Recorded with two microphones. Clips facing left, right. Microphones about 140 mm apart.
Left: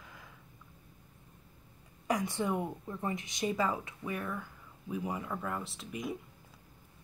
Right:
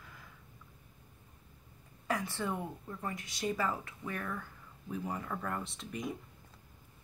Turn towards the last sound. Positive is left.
turn(degrees=0)  # may be behind; listen again after turning